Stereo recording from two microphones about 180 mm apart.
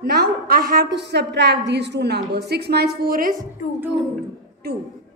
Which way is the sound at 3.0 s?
50° right (ahead or behind).